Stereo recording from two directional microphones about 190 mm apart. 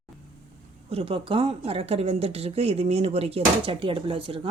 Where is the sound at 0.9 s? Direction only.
30° right (ahead or behind).